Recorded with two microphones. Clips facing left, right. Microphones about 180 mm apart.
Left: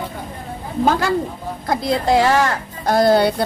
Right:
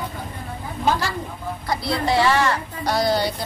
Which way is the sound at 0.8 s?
55° left (ahead or behind).